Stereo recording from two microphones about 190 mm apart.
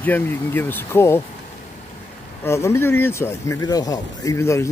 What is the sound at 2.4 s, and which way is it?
Speech, 15° left (ahead or behind).